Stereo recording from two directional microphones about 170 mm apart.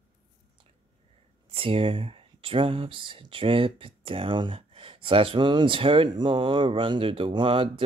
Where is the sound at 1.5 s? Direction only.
35° right (ahead or behind).